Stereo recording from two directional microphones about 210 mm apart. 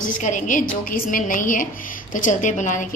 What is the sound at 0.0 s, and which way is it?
A woman's voice, 40° left (ahead or behind).